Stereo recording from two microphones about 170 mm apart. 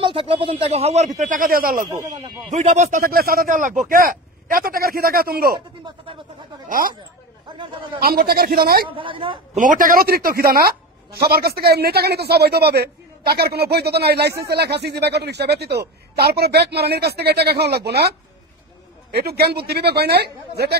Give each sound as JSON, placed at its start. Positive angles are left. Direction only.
{"t": 0.0, "sound": "speech", "side_deg": -30}
{"t": 2.5, "sound": "a man's voice", "side_deg": -45}
{"t": 6.7, "sound": "speech", "side_deg": -55}
{"t": 8.0, "sound": "a man's voice", "side_deg": -65}
{"t": 8.8, "sound": "speech", "side_deg": -30}
{"t": 9.6, "sound": "speech", "side_deg": -50}
{"t": 19.1, "sound": "speech", "side_deg": -65}